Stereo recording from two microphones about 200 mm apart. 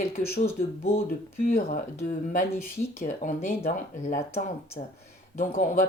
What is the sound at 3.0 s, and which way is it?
Speech, 40° left (ahead or behind).